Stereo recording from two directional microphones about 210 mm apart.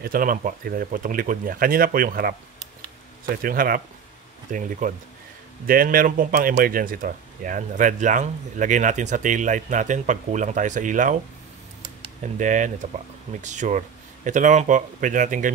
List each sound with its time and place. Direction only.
0.0 s speech: 40° right (ahead or behind)
3.4 s speech: 45° right (ahead or behind)
12.2 s speech: 35° right (ahead or behind)